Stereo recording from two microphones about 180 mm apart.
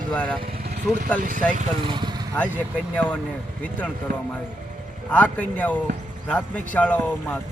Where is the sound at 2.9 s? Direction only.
10° left (ahead or behind).